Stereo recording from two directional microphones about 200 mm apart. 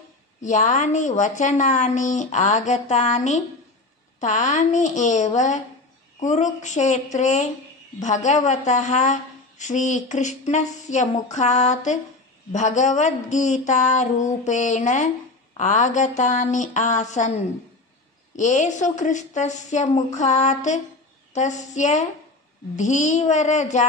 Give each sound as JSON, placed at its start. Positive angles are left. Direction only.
{"t": 0.4, "sound": "a woman's voice", "side_deg": 35}
{"t": 18.3, "sound": "a woman's voice", "side_deg": 35}